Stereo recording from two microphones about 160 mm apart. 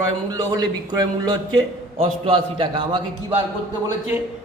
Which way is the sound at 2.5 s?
30° right (ahead or behind).